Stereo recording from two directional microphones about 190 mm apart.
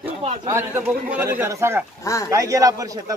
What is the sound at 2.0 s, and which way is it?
Speech, 15° left (ahead or behind).